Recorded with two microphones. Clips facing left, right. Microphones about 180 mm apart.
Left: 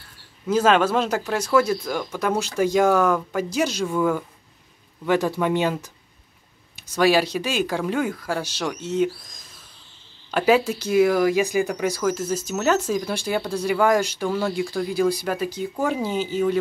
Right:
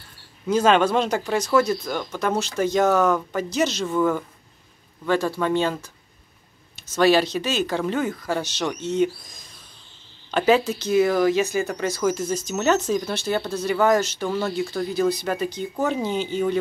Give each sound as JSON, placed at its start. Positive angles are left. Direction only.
{"t": 0.5, "sound": "speech", "side_deg": 5}
{"t": 6.9, "sound": "speech", "side_deg": 10}